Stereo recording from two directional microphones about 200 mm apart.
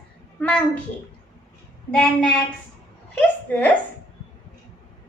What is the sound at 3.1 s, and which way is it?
Speech, 5° left (ahead or behind).